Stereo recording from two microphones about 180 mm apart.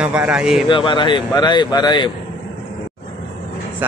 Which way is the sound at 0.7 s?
25° left (ahead or behind).